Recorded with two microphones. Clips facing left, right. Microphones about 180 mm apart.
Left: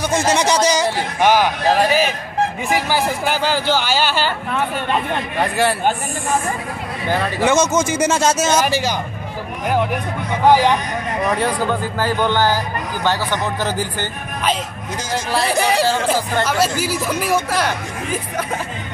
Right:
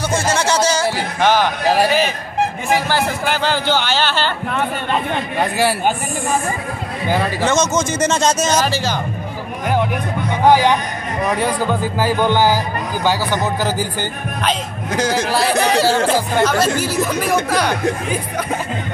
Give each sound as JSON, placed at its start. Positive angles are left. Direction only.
{"t": 0.1, "sound": "a sound", "side_deg": 15}
{"t": 1.2, "sound": "speech", "side_deg": 10}
{"t": 2.7, "sound": "speech", "side_deg": 10}
{"t": 5.1, "sound": "a man's voice", "side_deg": -5}
{"t": 7.4, "sound": "speech", "side_deg": 10}
{"t": 12.0, "sound": "music", "side_deg": -10}
{"t": 13.0, "sound": "a man's voice", "side_deg": -5}
{"t": 15.0, "sound": "speech", "side_deg": -70}
{"t": 16.4, "sound": "speech", "side_deg": 10}